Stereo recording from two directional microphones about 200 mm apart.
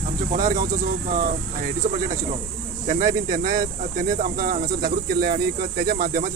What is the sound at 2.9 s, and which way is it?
Speech, 40° right (ahead or behind).